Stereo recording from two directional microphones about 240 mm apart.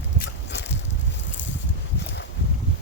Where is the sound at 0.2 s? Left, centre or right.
Left.